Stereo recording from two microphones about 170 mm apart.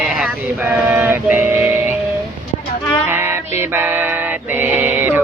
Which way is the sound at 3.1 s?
15° right (ahead or behind).